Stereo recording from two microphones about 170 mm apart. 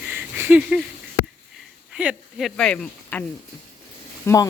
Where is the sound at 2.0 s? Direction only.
5° right (ahead or behind).